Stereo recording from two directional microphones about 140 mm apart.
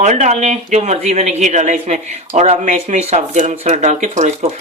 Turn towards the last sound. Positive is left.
turn(degrees=-60)  # may be behind; listen again after turning